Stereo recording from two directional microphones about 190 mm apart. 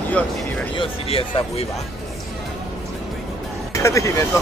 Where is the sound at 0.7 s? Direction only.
30° left (ahead or behind).